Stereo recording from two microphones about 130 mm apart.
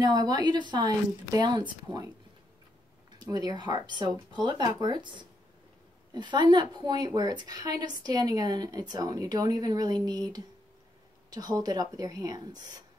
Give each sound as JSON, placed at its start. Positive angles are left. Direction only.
{"t": 0.0, "sound": "a woman's voice", "side_deg": -30}
{"t": 3.2, "sound": "a woman's voice", "side_deg": -30}